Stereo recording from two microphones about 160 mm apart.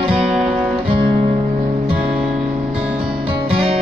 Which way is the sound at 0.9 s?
35° right (ahead or behind).